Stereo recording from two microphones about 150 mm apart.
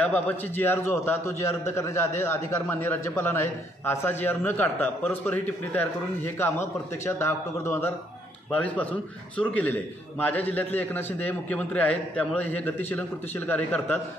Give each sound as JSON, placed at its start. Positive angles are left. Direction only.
{"t": 0.0, "sound": "a man's voice", "side_deg": 10}